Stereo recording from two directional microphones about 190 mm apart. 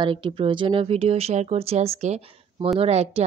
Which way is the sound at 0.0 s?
25° right (ahead or behind).